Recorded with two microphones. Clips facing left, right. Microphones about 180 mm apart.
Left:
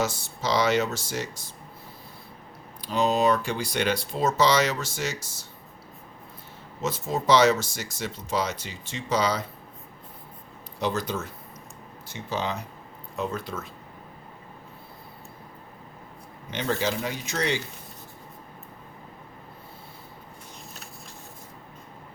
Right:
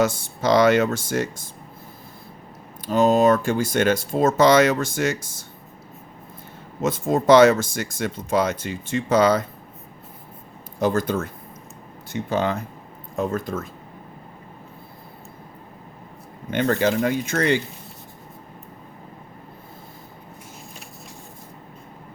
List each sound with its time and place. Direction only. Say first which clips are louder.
0.0 s speech: right 7 dB; 55° right (ahead or behind)
2.8 s speech: right 6 dB; 50° right (ahead or behind)
6.8 s speech: right 7 dB; 50° right (ahead or behind)
10.8 s speech: right 7 dB; 50° right (ahead or behind)
16.5 s speech: right 7 dB; 55° right (ahead or behind)